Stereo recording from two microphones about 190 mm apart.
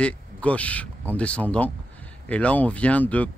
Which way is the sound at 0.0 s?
5° left (ahead or behind).